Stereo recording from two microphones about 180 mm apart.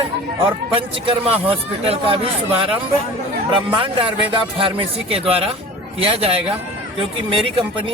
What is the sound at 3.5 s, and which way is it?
Speech, 30° right (ahead or behind).